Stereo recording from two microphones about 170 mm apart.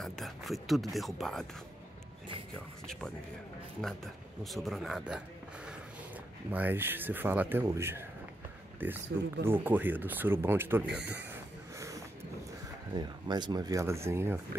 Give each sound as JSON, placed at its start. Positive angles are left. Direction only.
{"t": 0.0, "sound": "speech", "side_deg": 0}
{"t": 3.8, "sound": "speech", "side_deg": 0}
{"t": 6.5, "sound": "speech", "side_deg": -10}
{"t": 12.9, "sound": "speech", "side_deg": -25}